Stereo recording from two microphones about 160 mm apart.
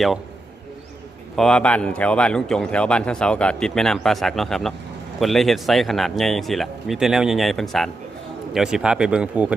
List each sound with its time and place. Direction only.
1.4 s a man's voice: 5° left (ahead or behind)